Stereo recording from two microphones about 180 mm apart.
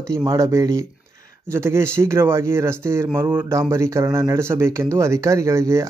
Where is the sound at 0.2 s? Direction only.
15° right (ahead or behind).